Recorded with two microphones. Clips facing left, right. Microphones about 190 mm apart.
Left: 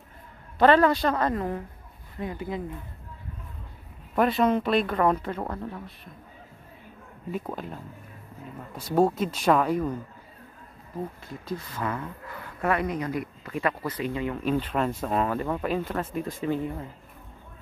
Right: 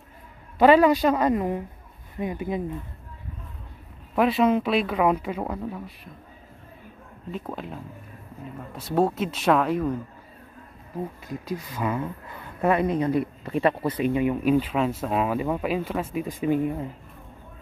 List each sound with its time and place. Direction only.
0.6 s speech: 10° right (ahead or behind)
4.1 s speech: centre (ahead or behind)
7.2 s speech: 5° left (ahead or behind)
11.2 s speech: 15° right (ahead or behind)